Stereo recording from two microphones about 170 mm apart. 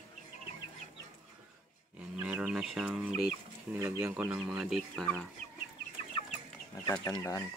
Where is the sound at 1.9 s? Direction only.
10° right (ahead or behind).